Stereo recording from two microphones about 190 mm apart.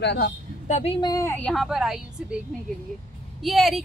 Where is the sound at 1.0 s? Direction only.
15° left (ahead or behind); by 2.2 s centre (ahead or behind).